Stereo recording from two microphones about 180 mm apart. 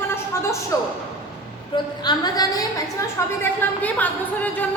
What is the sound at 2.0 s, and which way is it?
A woman's voice, 20° left (ahead or behind).